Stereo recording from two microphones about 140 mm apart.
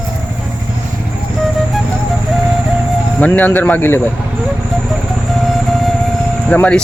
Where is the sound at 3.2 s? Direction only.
10° left (ahead or behind).